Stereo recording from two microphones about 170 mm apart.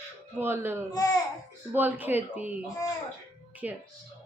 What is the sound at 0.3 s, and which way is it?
A woman's voice, 15° right (ahead or behind).